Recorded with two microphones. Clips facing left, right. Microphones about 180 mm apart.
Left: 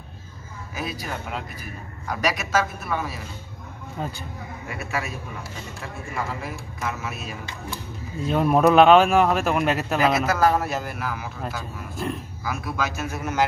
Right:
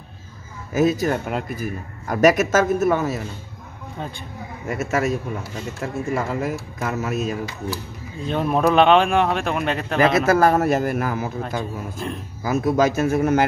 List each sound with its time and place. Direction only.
0.7 s a man's voice: 45° right (ahead or behind)
4.6 s a man's voice: 45° right (ahead or behind)
7.7 s speech: 5° left (ahead or behind)
10.2 s a man's voice: 55° right (ahead or behind)
12.4 s a man's voice: 45° right (ahead or behind)